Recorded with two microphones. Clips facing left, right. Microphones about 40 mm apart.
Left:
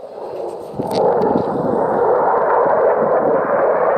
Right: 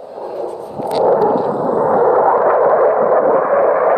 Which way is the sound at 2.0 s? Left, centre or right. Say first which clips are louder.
Right 3 dB; centre.